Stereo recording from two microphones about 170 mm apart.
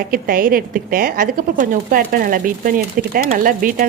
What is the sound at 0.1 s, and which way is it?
A woman's voice, 55° right (ahead or behind).